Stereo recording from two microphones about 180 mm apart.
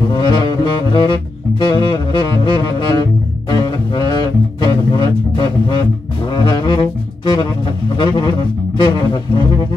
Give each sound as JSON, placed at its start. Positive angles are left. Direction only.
{"t": 0.1, "sound": "saxophone", "side_deg": 25}
{"t": 3.4, "sound": "music", "side_deg": 25}
{"t": 6.3, "sound": "saxophone", "side_deg": 25}